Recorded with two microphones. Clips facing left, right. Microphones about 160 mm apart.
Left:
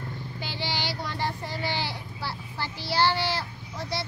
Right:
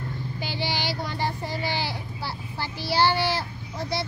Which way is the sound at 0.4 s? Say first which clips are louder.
Right 3 dB; 10° right (ahead or behind).